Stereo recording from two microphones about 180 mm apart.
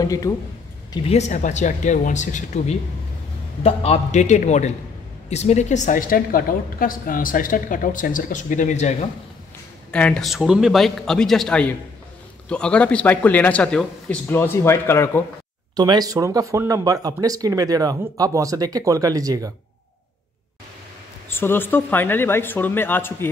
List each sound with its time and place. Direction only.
0.0 s speech: 20° left (ahead or behind)
1.0 s a woman's voice: 40° left (ahead or behind)
9.8 s a man's voice: 5° left (ahead or behind)
15.7 s speech: 20° right (ahead or behind)
21.3 s a man's voice: 10° left (ahead or behind)